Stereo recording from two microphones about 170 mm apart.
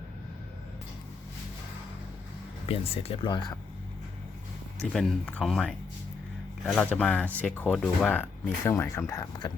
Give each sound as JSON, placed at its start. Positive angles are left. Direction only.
{"t": 2.6, "sound": "speech", "side_deg": 35}
{"t": 4.8, "sound": "speech", "side_deg": 0}